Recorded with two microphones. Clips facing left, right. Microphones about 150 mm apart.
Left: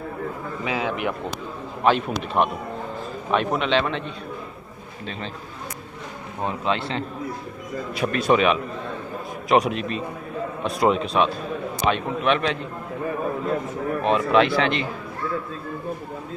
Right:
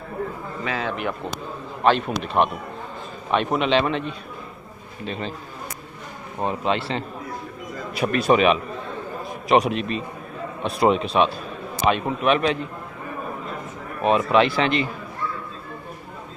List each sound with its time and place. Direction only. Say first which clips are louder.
0.7 s a man's voice: left 1 dB; 15° left (ahead or behind); by 4.0 s 5° right (ahead or behind)
5.0 s a man's voice: right 4 dB; 5° right (ahead or behind)
6.4 s a man's voice: right 1 dB; 5° right (ahead or behind)
14.0 s speech: right 1 dB; 5° right (ahead or behind)